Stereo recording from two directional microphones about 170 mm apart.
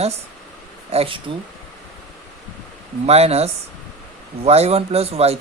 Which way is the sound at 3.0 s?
35° right (ahead or behind).